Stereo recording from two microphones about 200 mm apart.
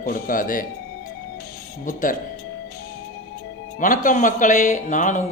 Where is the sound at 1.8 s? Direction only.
40° left (ahead or behind).